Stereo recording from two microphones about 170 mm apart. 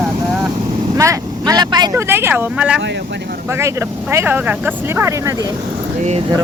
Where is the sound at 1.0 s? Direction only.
20° right (ahead or behind).